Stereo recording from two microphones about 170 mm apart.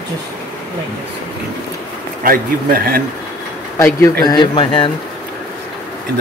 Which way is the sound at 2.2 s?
60° right (ahead or behind).